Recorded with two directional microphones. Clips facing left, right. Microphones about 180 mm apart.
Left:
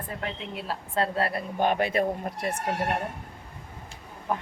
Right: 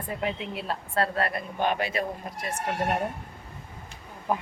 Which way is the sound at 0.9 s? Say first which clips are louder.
Left 1 dB; 25° left (ahead or behind).